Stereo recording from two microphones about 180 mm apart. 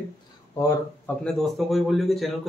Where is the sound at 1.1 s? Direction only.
Centre (ahead or behind).